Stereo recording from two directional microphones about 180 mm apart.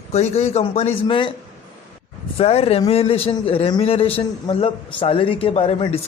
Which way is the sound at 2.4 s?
35° left (ahead or behind).